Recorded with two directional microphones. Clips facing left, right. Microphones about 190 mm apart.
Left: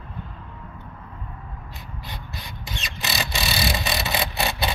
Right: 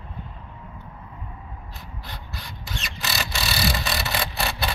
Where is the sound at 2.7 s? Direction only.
20° left (ahead or behind).